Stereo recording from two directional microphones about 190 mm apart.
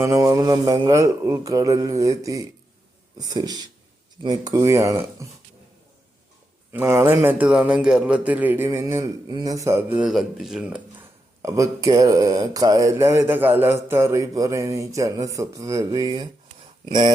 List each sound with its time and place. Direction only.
0.0 s speech: 15° right (ahead or behind)
6.7 s speech: 15° right (ahead or behind)
11.4 s speech: 15° right (ahead or behind)